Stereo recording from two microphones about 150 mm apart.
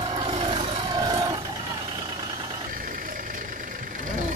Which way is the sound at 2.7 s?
65° right (ahead or behind).